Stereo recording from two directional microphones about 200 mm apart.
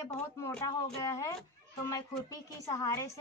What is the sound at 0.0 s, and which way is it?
A woman's voice, 10° left (ahead or behind).